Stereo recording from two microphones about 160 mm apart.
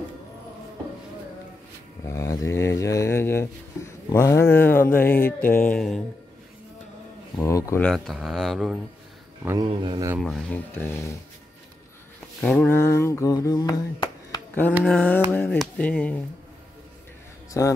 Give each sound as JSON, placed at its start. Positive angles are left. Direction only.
{"t": 2.0, "sound": "speech", "side_deg": 20}
{"t": 7.3, "sound": "speech", "side_deg": 20}
{"t": 7.8, "sound": "speech", "side_deg": 0}
{"t": 9.4, "sound": "speech", "side_deg": -15}
{"t": 9.7, "sound": "speech", "side_deg": -30}
{"t": 10.1, "sound": "speech", "side_deg": 5}
{"t": 12.4, "sound": "speech", "side_deg": 10}
{"t": 14.9, "sound": "speech", "side_deg": 10}
{"t": 17.5, "sound": "speech", "side_deg": 20}